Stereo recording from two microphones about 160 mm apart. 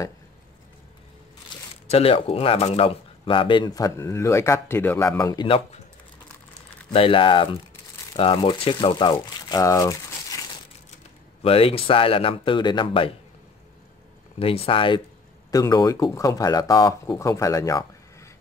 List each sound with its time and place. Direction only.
1.9 s speech: 40° left (ahead or behind)
6.9 s speech: 35° left (ahead or behind)
8.9 s speech: 25° left (ahead or behind)
11.4 s speech: 35° left (ahead or behind)
14.4 s speech: 35° left (ahead or behind)
15.5 s speech: 20° left (ahead or behind)